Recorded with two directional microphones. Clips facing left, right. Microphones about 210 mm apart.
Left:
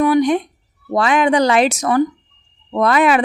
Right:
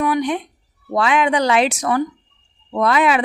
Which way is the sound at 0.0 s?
35° left (ahead or behind).